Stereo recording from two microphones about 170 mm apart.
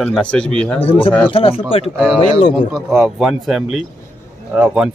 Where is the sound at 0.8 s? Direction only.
30° left (ahead or behind).